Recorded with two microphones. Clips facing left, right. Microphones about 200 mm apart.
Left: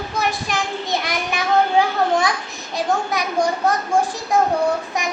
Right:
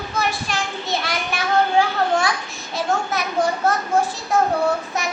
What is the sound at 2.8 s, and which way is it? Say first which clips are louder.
Child singing: left 1 dB; 15° left (ahead or behind).